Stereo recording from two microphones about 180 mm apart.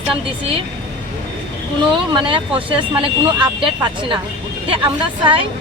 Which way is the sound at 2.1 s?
30° right (ahead or behind).